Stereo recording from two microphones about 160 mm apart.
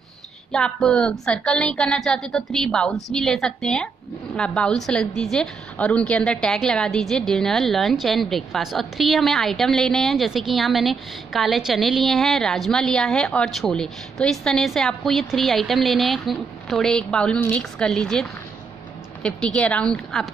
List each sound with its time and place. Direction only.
0.5 s a woman's voice: 5° left (ahead or behind)